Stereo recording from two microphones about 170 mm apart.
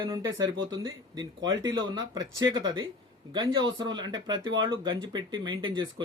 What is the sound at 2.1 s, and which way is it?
Speech, 25° right (ahead or behind).